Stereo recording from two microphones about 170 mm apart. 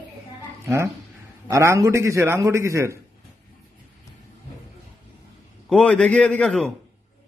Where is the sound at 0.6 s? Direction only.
15° right (ahead or behind).